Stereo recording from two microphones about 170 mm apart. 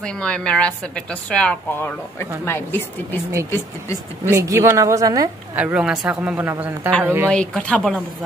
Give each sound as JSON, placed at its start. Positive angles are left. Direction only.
{"t": 0.0, "sound": "a woman's voice", "side_deg": 5}
{"t": 4.2, "sound": "speech", "side_deg": -15}
{"t": 5.6, "sound": "speech", "side_deg": -5}
{"t": 7.2, "sound": "a woman's voice", "side_deg": 5}